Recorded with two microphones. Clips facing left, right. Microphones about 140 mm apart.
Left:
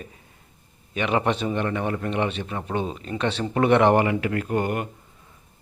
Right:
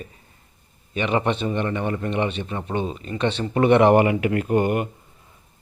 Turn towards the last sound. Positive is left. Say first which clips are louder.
# right 4 dB
turn(degrees=-15)  # may be behind; listen again after turning